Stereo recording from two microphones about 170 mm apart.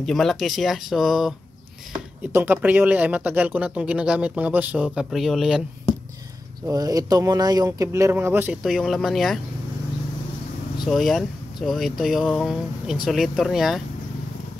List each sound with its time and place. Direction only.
0.0 s speech: centre (ahead or behind)
2.3 s speech: 10° right (ahead or behind)
6.7 s speech: 20° right (ahead or behind); by 9.4 s centre (ahead or behind)
10.9 s speech: centre (ahead or behind)